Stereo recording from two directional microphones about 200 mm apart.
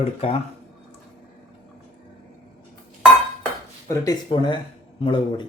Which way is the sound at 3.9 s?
15° left (ahead or behind).